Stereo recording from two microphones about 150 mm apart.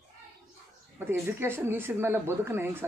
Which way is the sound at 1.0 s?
15° right (ahead or behind).